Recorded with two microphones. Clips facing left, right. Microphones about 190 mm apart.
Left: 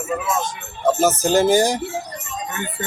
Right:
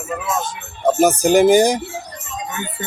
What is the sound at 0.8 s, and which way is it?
Speech, 15° right (ahead or behind).